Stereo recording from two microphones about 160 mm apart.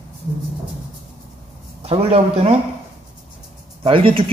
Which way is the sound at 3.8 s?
35° right (ahead or behind).